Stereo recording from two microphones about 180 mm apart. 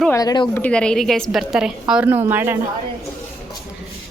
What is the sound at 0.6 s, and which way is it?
A woman's voice, 5° left (ahead or behind).